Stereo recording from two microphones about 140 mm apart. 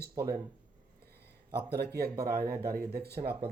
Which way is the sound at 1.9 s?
90° right.